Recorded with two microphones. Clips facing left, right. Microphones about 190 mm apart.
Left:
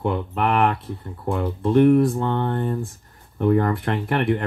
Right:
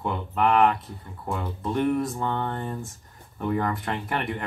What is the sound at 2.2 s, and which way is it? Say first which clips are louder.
Speech: left 5 dB; 35° left (ahead or behind).